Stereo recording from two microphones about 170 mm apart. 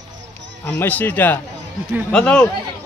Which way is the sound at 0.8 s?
10° left (ahead or behind).